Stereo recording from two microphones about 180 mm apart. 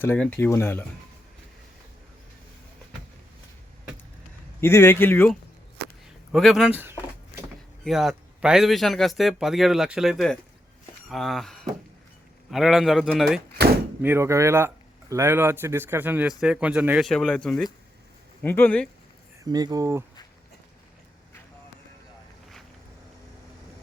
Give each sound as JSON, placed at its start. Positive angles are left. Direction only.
{"t": 0.0, "sound": "speech", "side_deg": 10}
{"t": 4.6, "sound": "speech", "side_deg": 15}
{"t": 6.3, "sound": "speech", "side_deg": 0}
{"t": 7.9, "sound": "speech", "side_deg": 0}
{"t": 14.0, "sound": "speech", "side_deg": -15}
{"t": 17.1, "sound": "speech", "side_deg": 5}
{"t": 19.5, "sound": "speech", "side_deg": -20}